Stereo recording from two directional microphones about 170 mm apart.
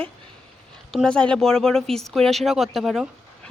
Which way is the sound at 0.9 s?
5° left (ahead or behind).